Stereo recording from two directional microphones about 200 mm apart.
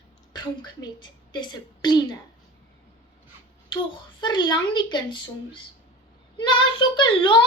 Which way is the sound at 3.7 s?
25° left (ahead or behind).